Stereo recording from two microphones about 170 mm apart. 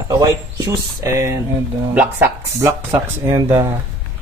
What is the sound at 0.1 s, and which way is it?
Speech, 20° right (ahead or behind).